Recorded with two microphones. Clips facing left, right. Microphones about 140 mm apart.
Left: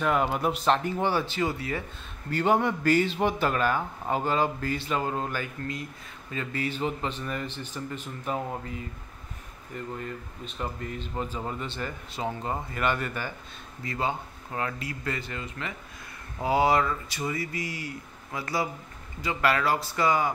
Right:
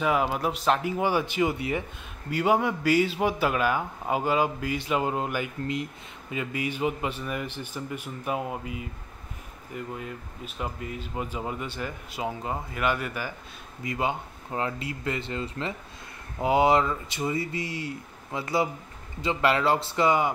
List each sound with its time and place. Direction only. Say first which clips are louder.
0.0 s a man's voice: even; 5° right (ahead or behind); by 1.9 s 20° right (ahead or behind)
2.3 s a man's voice: even; 5° right (ahead or behind)